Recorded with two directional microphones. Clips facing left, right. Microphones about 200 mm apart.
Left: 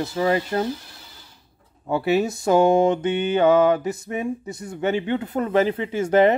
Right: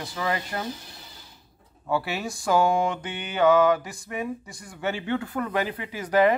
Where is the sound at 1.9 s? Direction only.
20° left (ahead or behind).